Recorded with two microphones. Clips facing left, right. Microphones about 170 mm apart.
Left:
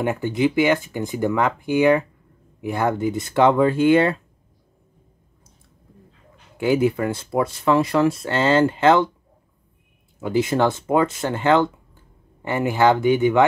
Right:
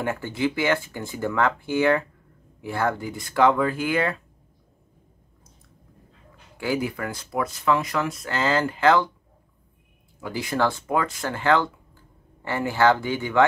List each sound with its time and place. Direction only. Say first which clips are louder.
0.0 s speech: left 5 dB; 20° left (ahead or behind)
6.6 s speech: left 7 dB; 20° left (ahead or behind)
10.2 s speech: left 6 dB; 25° left (ahead or behind)